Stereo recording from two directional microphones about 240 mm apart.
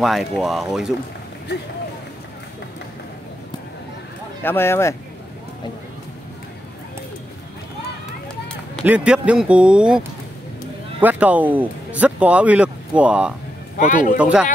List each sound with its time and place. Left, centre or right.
0.0 s speech: centre
4.4 s speech: centre
8.5 s speech: centre
13.7 s a man's voice: left
14.1 s speech: centre